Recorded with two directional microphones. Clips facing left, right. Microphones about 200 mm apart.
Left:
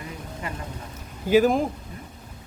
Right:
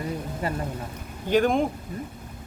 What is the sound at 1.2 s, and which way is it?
Speech, 5° left (ahead or behind).